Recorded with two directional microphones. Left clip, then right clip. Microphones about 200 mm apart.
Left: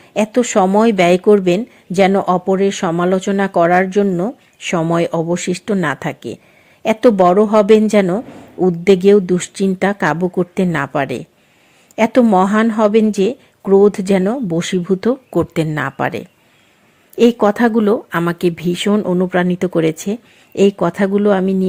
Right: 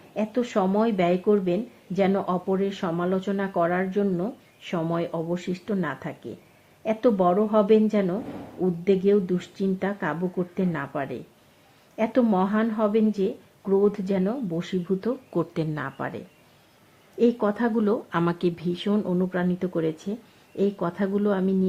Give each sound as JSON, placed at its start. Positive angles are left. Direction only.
{"t": 0.1, "sound": "speech", "side_deg": 40}